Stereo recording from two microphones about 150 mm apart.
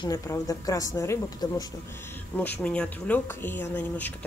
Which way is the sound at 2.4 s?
10° left (ahead or behind).